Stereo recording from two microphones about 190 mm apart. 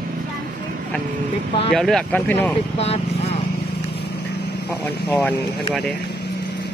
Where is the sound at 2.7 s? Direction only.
35° left (ahead or behind).